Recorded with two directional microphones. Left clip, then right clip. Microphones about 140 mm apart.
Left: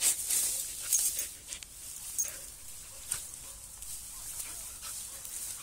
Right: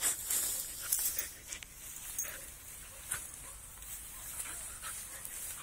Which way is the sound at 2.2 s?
20° left (ahead or behind).